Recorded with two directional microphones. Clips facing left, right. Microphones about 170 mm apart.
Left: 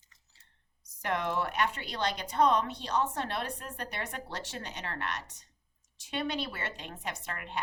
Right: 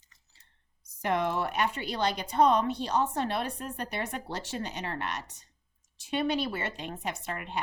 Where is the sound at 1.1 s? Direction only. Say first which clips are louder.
Right 3 dB; 35° right (ahead or behind).